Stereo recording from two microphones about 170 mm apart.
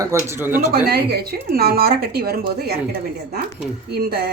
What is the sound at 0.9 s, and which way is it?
Speech, 65° right (ahead or behind).